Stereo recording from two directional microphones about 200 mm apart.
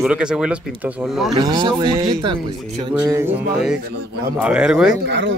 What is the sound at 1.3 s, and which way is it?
Speech, 20° right (ahead or behind).